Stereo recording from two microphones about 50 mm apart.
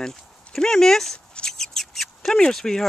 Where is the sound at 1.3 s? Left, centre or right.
Centre.